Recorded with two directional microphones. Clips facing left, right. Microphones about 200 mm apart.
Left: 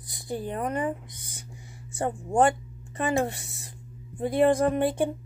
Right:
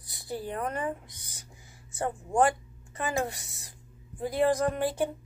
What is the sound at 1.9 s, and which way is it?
Speech, 25° left (ahead or behind).